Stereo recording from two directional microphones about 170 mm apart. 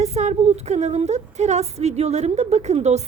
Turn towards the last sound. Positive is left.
turn(degrees=-40)  # may be behind; listen again after turning